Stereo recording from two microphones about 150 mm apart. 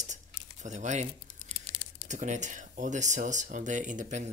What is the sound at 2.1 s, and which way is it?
Speech, 55° right (ahead or behind).